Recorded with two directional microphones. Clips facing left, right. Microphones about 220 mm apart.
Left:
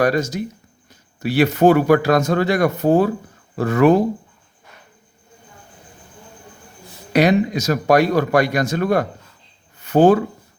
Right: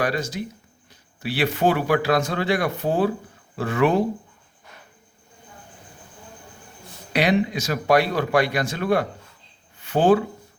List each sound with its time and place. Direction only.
0.0 s speech: 45° left (ahead or behind)
7.1 s speech: 45° left (ahead or behind)